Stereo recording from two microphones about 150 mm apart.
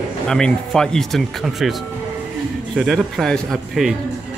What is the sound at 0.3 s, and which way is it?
Speech, 5° left (ahead or behind).